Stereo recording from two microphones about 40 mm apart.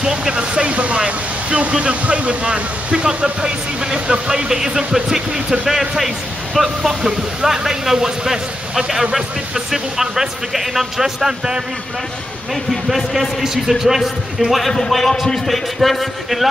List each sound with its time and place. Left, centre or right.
0.0 s a sound: centre
0.3 s speech: right
3.4 s speech: centre
6.9 s speech: centre
12.9 s speech: centre
14.7 s a man's voice: centre